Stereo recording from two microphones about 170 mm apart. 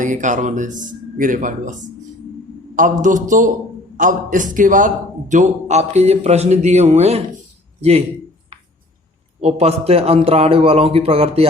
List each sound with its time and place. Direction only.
0.0 s speech: 45° right (ahead or behind)
2.7 s a man's voice: 50° right (ahead or behind)
9.4 s a man's voice: 35° right (ahead or behind)